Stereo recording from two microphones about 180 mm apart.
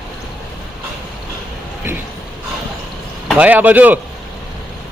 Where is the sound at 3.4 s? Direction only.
10° right (ahead or behind).